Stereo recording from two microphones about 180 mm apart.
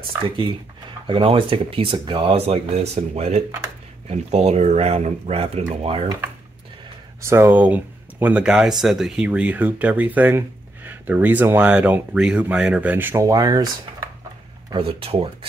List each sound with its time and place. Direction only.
0.0 s speech: 30° right (ahead or behind)
7.2 s speech: 15° right (ahead or behind); by 15.2 s 30° right (ahead or behind)